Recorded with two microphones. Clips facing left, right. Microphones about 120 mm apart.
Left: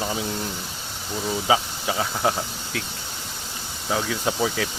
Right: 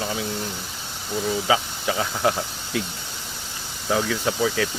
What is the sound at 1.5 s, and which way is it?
Speech, 20° left (ahead or behind).